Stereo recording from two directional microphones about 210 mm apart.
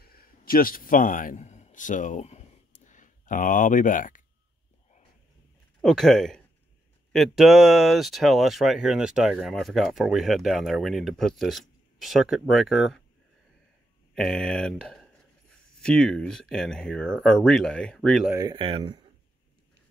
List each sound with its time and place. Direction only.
0.0 s a sound: 45° left (ahead or behind)
5.8 s speech: centre (ahead or behind)
14.1 s speech: centre (ahead or behind)
18.3 s speech: 15° right (ahead or behind)